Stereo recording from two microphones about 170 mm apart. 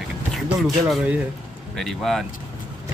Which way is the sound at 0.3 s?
Centre (ahead or behind).